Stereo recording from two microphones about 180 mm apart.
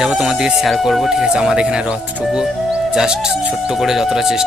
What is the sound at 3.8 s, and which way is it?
Speech, centre (ahead or behind).